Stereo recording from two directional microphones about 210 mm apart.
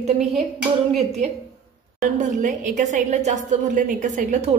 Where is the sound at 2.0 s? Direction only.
35° right (ahead or behind).